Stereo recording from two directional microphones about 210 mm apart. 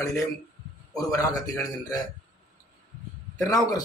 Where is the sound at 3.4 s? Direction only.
15° left (ahead or behind).